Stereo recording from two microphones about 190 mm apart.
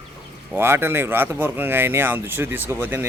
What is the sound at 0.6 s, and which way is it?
Speech, 10° right (ahead or behind).